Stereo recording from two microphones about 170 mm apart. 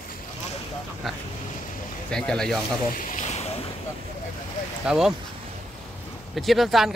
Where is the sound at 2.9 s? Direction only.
45° left (ahead or behind).